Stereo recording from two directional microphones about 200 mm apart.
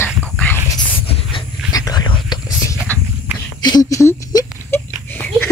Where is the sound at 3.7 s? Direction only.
20° left (ahead or behind).